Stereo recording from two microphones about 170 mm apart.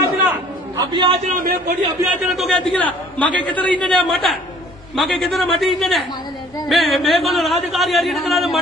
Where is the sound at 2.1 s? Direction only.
Centre (ahead or behind).